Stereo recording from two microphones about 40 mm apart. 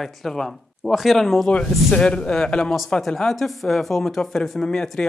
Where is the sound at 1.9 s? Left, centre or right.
Left.